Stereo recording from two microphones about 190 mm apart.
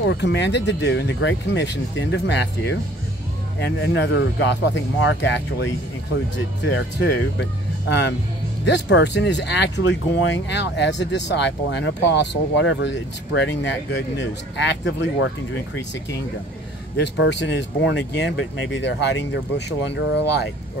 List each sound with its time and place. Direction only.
0.0 s speech: 70° left (ahead or behind)
8.6 s speech: 65° left (ahead or behind)